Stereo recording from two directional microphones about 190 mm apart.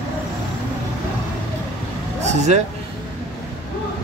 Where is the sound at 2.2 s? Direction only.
35° right (ahead or behind).